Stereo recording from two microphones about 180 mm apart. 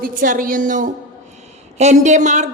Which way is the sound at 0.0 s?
50° right (ahead or behind).